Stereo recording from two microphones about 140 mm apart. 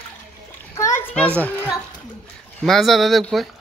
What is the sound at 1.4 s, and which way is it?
Speech, 10° left (ahead or behind).